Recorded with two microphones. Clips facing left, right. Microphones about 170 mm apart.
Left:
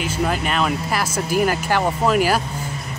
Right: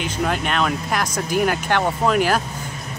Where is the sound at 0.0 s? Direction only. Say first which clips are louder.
Left 1 dB; 5° left (ahead or behind).